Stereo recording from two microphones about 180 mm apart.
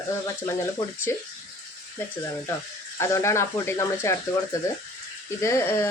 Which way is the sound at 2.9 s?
15° left (ahead or behind).